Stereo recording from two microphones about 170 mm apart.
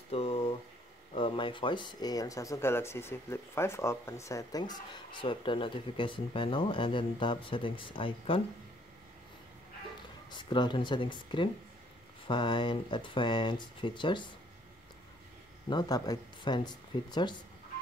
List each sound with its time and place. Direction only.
0.1 s a sound: 35° left (ahead or behind)
1.1 s speech: 30° left (ahead or behind)
10.3 s speech: 30° left (ahead or behind)
15.7 s speech: 25° left (ahead or behind)